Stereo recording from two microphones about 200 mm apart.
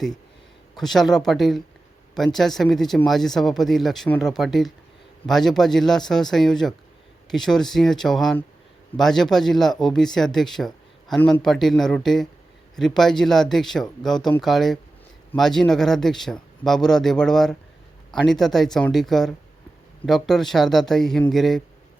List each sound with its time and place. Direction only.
0.8 s speech: centre (ahead or behind)